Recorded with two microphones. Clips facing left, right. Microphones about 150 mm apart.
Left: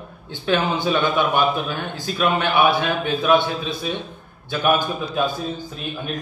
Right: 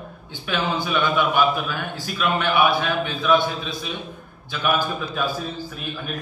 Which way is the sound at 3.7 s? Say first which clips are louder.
Left 4 dB; 25° left (ahead or behind).